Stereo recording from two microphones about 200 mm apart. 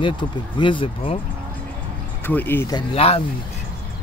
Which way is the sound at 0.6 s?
25° left (ahead or behind).